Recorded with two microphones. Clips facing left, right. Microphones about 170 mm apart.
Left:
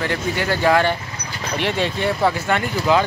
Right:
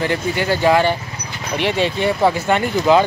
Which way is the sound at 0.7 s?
15° right (ahead or behind).